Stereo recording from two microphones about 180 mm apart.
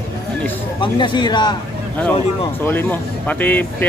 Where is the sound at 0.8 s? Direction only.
25° left (ahead or behind).